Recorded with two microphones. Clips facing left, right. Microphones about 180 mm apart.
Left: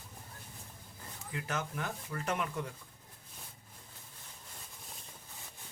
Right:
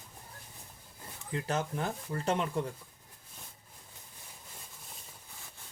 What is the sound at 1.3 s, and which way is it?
Speech, 30° right (ahead or behind).